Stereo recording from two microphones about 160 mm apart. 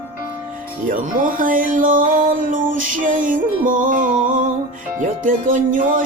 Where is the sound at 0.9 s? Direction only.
60° right (ahead or behind).